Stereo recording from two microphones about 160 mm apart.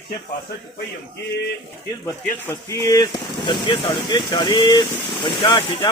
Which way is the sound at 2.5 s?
15° left (ahead or behind).